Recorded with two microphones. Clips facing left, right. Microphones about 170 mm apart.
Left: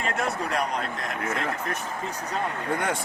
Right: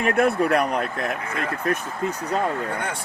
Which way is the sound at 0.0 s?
60° right (ahead or behind).